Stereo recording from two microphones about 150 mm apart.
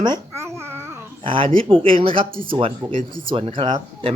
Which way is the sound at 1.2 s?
35° right (ahead or behind).